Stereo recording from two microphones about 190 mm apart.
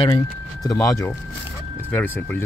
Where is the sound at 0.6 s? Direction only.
15° left (ahead or behind).